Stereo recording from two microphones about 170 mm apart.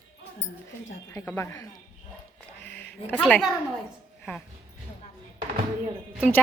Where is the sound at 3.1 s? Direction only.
5° left (ahead or behind).